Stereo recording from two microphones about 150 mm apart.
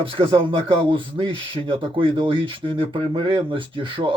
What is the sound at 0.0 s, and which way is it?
Speech, 35° right (ahead or behind).